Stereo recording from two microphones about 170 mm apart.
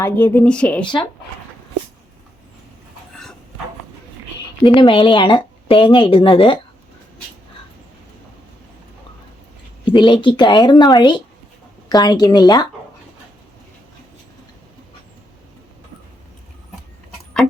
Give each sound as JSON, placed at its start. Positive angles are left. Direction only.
{"t": 0.0, "sound": "speech", "side_deg": 10}
{"t": 4.6, "sound": "speech", "side_deg": 30}
{"t": 9.8, "sound": "speech", "side_deg": 30}